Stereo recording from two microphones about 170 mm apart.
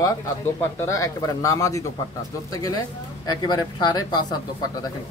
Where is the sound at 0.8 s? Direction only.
20° left (ahead or behind).